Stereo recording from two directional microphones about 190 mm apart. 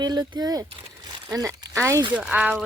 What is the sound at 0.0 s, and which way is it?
Speech, 20° right (ahead or behind).